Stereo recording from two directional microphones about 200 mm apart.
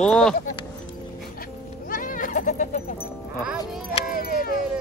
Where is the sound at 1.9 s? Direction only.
45° left (ahead or behind).